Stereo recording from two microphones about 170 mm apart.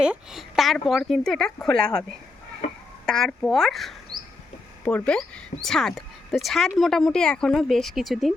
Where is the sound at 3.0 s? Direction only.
5° left (ahead or behind).